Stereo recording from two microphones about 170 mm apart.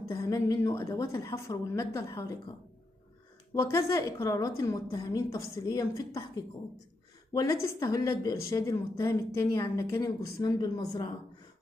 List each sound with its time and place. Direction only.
0.1 s a woman's voice: 15° left (ahead or behind)
3.5 s a woman's voice: 15° left (ahead or behind)
7.6 s a woman's voice: 20° left (ahead or behind)